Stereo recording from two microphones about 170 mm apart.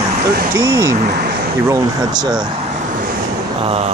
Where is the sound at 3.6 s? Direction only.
40° right (ahead or behind).